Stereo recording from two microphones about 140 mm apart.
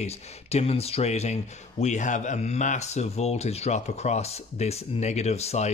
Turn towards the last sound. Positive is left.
turn(degrees=50)  # may be behind; listen again after turning